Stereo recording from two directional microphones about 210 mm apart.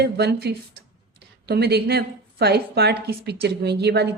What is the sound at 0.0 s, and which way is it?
A woman's voice, 50° right (ahead or behind).